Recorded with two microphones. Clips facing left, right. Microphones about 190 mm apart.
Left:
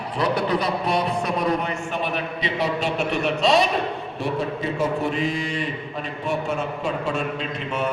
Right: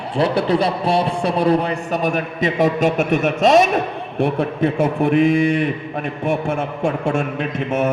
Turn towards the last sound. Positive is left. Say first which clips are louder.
# right 6 dB
turn(degrees=-50)  # may be behind; listen again after turning